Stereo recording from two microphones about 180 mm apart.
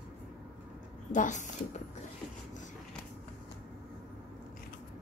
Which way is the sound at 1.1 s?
45° left (ahead or behind).